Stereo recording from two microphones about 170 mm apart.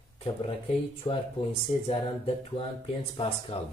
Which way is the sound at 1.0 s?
30° left (ahead or behind).